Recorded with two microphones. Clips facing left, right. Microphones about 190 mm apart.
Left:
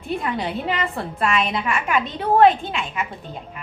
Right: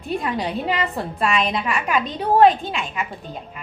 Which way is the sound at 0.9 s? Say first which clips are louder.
Right 1 dB; 15° right (ahead or behind).